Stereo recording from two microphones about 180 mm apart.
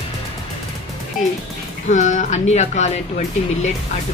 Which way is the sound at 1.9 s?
45° left (ahead or behind).